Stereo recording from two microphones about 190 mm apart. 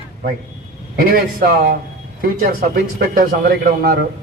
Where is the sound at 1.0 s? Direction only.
50° right (ahead or behind).